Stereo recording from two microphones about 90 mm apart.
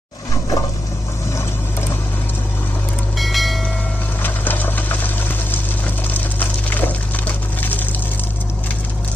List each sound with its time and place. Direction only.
3.2 s train: centre (ahead or behind)
4.2 s sewing machine: 20° left (ahead or behind)
6.1 s a sound: 20° left (ahead or behind)